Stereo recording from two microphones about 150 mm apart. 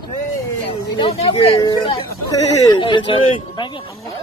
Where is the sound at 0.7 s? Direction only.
30° left (ahead or behind).